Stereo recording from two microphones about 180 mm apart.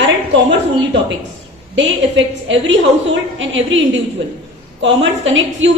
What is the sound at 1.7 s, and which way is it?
A woman's voice, 90° right.